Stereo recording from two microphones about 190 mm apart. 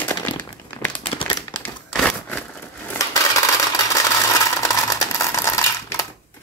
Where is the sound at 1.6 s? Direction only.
5° left (ahead or behind).